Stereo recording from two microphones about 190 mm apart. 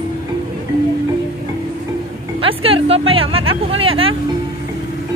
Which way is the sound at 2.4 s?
30° right (ahead or behind).